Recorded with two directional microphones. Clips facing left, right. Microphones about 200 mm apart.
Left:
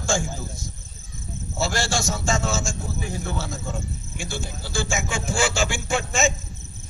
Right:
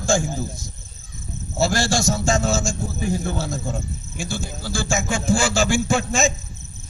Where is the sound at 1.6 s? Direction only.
40° right (ahead or behind).